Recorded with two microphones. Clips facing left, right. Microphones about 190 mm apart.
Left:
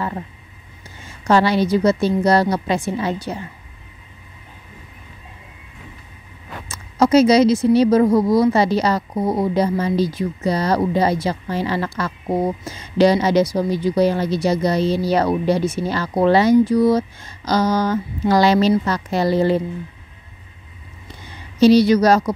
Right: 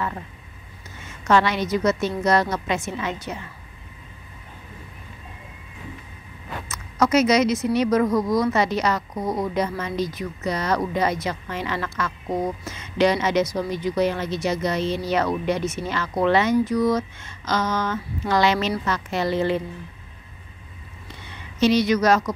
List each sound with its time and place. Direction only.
1.0 s speech: 35° left (ahead or behind)
6.7 s speech: 30° left (ahead or behind)
21.3 s a woman's voice: 35° left (ahead or behind)